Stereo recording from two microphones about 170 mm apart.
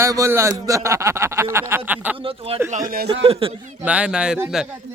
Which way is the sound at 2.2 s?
35° right (ahead or behind).